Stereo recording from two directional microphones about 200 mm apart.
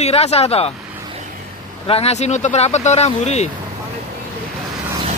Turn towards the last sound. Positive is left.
turn(degrees=35)  # may be behind; listen again after turning